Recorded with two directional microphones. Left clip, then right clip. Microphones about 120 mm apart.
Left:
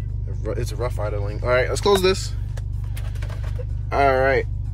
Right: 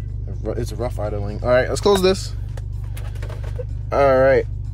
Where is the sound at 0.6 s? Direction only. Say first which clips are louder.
Right 1 dB; 25° right (ahead or behind).